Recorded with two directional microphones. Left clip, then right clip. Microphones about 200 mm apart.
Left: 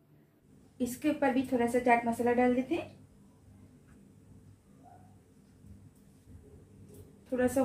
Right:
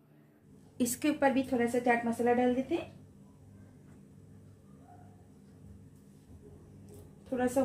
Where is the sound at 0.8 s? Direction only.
50° right (ahead or behind); by 2.4 s 35° right (ahead or behind).